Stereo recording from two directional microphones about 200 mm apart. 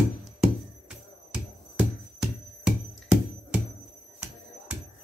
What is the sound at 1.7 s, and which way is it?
Music, 5° right (ahead or behind).